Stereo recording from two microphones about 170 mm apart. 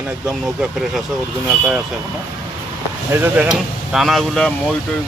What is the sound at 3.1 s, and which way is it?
Speech, 15° right (ahead or behind).